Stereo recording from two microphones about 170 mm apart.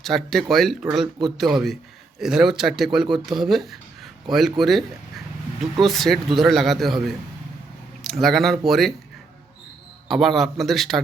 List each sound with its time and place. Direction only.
0.0 s speech: centre (ahead or behind)
10.1 s speech: centre (ahead or behind)